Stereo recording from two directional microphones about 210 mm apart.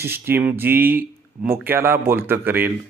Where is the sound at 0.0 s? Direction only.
10° right (ahead or behind).